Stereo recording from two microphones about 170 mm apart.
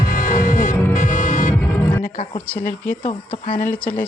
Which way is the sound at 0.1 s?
50° left (ahead or behind).